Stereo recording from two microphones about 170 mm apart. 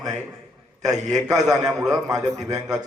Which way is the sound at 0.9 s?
45° right (ahead or behind).